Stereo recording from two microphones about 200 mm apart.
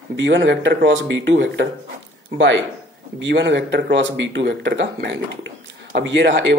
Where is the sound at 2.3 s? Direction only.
70° right (ahead or behind).